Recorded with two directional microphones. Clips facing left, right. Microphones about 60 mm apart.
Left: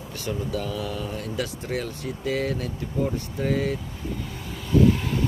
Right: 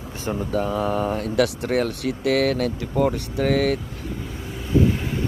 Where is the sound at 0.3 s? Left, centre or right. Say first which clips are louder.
Right 5 dB; right.